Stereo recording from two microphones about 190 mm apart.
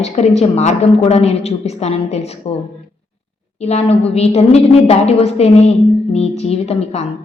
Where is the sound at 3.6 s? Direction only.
35° left (ahead or behind).